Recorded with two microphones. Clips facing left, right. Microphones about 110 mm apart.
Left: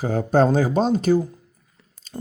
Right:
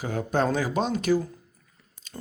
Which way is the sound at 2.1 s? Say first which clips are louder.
Left 8 dB; 20° left (ahead or behind).